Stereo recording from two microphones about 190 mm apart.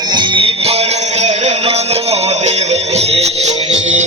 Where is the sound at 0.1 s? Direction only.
25° right (ahead or behind).